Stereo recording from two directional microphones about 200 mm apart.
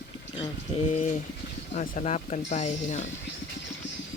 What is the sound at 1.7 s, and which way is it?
Speech, 35° left (ahead or behind).